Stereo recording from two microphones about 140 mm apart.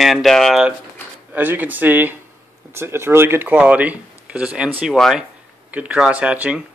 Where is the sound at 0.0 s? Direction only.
Centre (ahead or behind).